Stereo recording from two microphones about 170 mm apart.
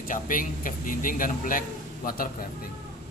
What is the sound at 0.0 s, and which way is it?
A man's voice, 55° left (ahead or behind).